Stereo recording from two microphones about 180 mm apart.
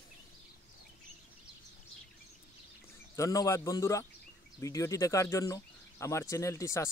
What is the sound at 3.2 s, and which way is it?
Speech, 20° left (ahead or behind).